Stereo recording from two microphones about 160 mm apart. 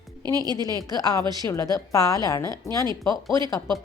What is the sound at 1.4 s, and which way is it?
A woman's voice, 20° left (ahead or behind).